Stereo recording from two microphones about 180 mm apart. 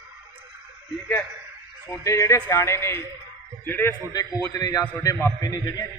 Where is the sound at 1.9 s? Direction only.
15° left (ahead or behind).